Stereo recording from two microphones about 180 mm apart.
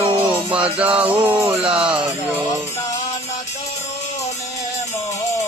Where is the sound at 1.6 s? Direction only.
30° right (ahead or behind).